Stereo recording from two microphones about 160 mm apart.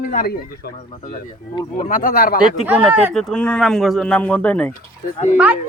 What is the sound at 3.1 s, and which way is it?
Speech, centre (ahead or behind).